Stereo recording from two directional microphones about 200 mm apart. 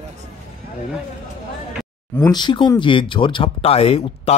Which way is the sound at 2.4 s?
25° left (ahead or behind).